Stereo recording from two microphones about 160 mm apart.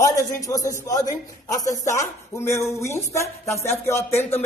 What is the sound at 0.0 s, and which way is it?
A man's voice, 20° left (ahead or behind).